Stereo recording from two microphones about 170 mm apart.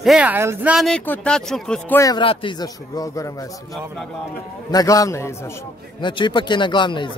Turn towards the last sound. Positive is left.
turn(degrees=30)  # may be behind; listen again after turning